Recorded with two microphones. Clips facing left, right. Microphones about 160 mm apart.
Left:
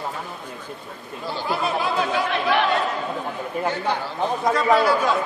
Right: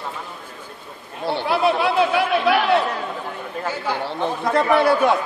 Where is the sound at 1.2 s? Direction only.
65° right (ahead or behind).